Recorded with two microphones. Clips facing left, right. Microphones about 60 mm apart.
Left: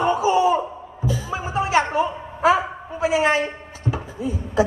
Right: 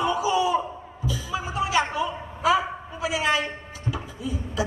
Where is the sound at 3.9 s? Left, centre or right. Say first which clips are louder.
Left 4 dB; left.